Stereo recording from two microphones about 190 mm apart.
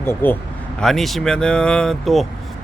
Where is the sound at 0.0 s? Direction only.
10° left (ahead or behind).